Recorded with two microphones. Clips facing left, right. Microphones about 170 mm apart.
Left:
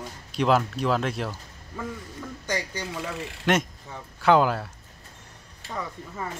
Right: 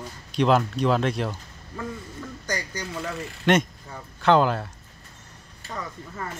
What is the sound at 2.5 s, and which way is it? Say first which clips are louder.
Speech: left 1 dB; 25° left (ahead or behind).